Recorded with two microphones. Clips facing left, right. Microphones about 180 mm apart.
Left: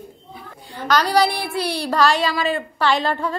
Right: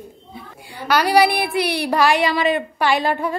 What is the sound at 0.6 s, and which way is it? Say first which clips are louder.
A woman's voice: right 1 dB; 10° right (ahead or behind).